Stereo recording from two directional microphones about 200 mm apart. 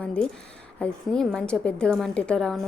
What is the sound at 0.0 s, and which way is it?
Speech, 5° left (ahead or behind).